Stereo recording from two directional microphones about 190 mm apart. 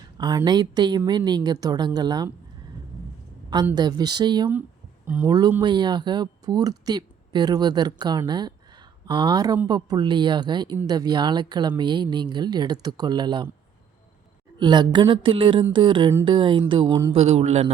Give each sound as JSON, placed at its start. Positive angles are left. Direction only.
{"t": 0.2, "sound": "speech", "side_deg": -20}
{"t": 3.8, "sound": "speech", "side_deg": -20}
{"t": 5.0, "sound": "speech", "side_deg": -10}
{"t": 14.6, "sound": "a man's voice", "side_deg": -25}